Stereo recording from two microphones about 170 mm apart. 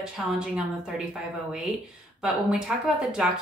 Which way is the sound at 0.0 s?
5° right (ahead or behind).